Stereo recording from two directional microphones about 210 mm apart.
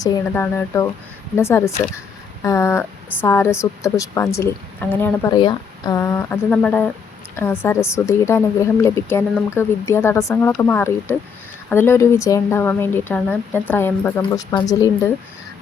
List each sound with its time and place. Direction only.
0.0 s a woman's voice: 15° left (ahead or behind)